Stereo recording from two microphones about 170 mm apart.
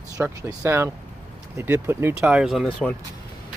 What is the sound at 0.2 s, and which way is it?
Speech, 15° right (ahead or behind).